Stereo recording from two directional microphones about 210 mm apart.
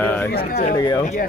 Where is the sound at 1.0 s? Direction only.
35° left (ahead or behind).